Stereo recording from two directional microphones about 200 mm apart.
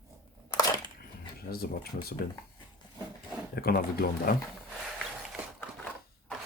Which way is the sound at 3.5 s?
50° left (ahead or behind).